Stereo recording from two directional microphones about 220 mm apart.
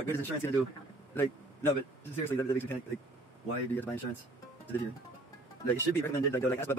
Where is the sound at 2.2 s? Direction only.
10° left (ahead or behind).